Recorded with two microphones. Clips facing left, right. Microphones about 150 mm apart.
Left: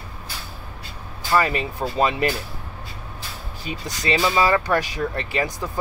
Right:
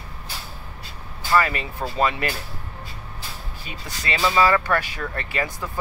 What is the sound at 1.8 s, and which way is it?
Speech, 5° left (ahead or behind).